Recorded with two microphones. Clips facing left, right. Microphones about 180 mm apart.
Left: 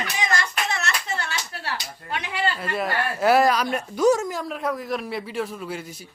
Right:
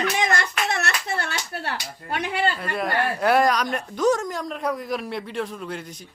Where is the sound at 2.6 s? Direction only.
Centre (ahead or behind).